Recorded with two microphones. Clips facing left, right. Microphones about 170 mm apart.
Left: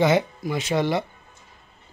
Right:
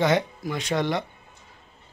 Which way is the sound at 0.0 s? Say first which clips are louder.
Left 2 dB; 5° left (ahead or behind).